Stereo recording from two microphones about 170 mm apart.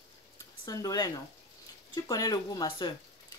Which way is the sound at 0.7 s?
20° left (ahead or behind).